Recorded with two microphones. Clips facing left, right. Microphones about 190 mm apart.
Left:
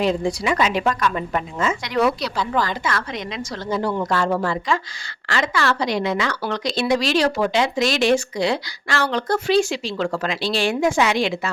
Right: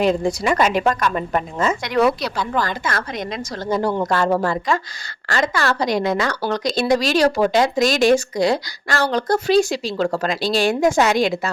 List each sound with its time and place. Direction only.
0.0 s a woman's voice: 45° right (ahead or behind)
2.4 s speech: centre (ahead or behind)
2.6 s a woman's voice: 45° right (ahead or behind)